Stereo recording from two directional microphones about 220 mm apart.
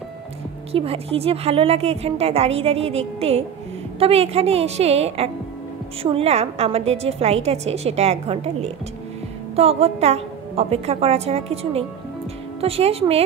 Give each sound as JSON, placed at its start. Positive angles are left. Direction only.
{"t": 0.7, "sound": "a woman's voice", "side_deg": -25}